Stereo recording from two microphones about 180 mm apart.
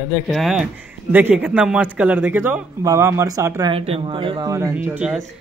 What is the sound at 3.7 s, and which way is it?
Speech, 30° right (ahead or behind).